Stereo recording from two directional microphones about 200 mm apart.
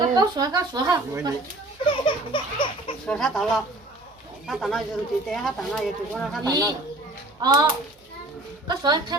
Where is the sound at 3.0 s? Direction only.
Centre (ahead or behind).